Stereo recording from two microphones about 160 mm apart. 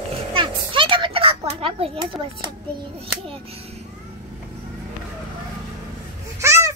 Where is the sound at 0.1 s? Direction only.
30° right (ahead or behind).